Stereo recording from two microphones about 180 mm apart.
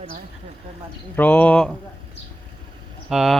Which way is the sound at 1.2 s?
5° left (ahead or behind).